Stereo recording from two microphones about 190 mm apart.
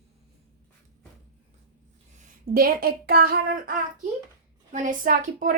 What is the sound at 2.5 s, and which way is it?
A woman's voice, 50° right (ahead or behind).